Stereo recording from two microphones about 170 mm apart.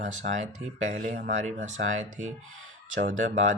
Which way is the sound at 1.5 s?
45° right (ahead or behind).